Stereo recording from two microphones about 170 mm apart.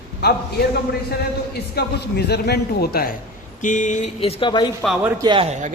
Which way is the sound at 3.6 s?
45° left (ahead or behind).